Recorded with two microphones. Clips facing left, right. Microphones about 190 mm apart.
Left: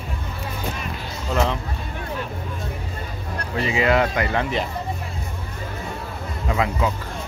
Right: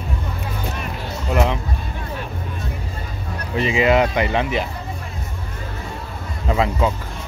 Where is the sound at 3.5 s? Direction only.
20° right (ahead or behind).